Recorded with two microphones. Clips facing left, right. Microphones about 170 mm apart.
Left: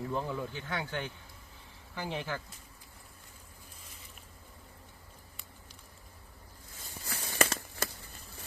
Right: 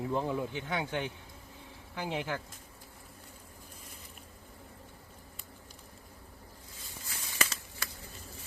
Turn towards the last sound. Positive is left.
turn(degrees=55)  # may be behind; listen again after turning